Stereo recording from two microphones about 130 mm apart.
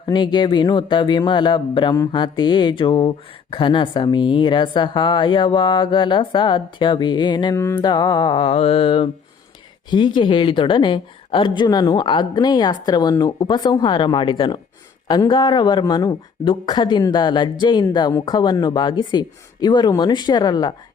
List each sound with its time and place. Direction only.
0.0 s speech: 35° left (ahead or behind)
7.5 s music: 20° left (ahead or behind)
7.9 s music: 30° left (ahead or behind)
9.9 s speech: 40° left (ahead or behind)